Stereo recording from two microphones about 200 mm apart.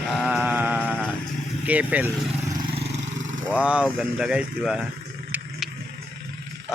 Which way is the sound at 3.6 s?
5° right (ahead or behind).